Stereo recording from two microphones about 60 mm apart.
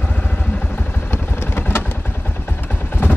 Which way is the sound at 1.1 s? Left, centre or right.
Left.